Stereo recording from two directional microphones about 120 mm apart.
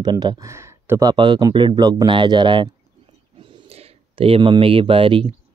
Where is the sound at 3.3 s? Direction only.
55° right (ahead or behind).